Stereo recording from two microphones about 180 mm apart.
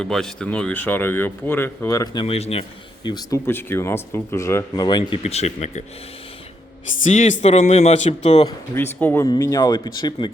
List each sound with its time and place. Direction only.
0.0 s speech: 5° left (ahead or behind); by 2.2 s 20° left (ahead or behind)
2.2 s speech: 35° left (ahead or behind)
7.1 s speech: 45° left (ahead or behind)
8.4 s speech: 10° left (ahead or behind)